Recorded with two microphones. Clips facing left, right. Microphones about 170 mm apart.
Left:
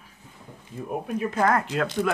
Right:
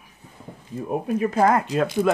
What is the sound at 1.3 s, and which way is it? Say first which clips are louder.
Speech: right 3 dB; 20° right (ahead or behind).